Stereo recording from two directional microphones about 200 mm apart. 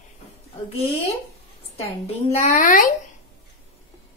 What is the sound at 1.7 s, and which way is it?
A woman's voice, 30° left (ahead or behind).